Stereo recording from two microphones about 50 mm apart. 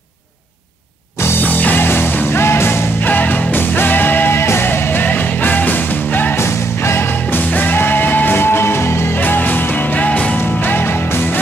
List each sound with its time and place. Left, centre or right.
1.4 s music: left
3.0 s music: left
4.4 s music: left
6.3 s music: left
7.3 s music: left
9.1 s music: left
10.6 s music: left